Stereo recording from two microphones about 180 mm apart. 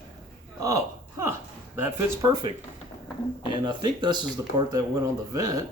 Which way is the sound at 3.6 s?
25° right (ahead or behind).